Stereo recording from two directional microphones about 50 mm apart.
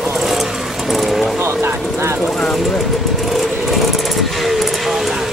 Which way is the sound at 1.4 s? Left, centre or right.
Right.